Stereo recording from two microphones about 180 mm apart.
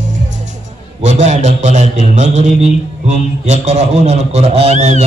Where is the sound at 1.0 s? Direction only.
40° right (ahead or behind).